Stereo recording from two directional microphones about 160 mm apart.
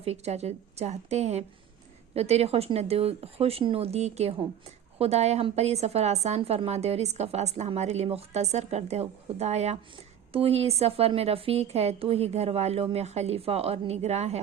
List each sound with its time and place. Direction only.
0.0 s a woman's voice: 40° right (ahead or behind)